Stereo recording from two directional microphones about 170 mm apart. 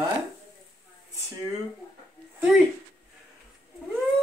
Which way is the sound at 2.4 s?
5° right (ahead or behind).